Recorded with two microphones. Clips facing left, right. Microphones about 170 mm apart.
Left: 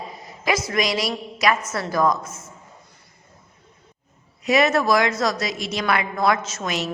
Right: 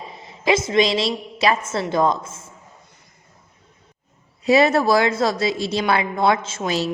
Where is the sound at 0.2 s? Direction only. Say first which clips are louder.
Right 5 dB; 25° right (ahead or behind).